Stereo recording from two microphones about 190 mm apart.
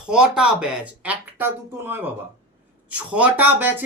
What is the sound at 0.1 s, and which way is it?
Speech, 5° right (ahead or behind).